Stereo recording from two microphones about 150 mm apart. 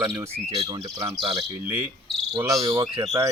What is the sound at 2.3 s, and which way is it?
Speech, 25° right (ahead or behind).